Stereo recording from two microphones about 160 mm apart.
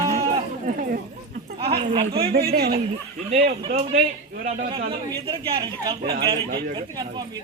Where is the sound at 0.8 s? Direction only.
65° right (ahead or behind).